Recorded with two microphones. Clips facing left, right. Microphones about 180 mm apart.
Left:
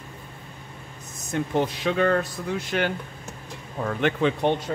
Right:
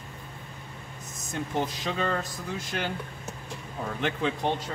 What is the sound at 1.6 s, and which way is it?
Speech, 60° left (ahead or behind).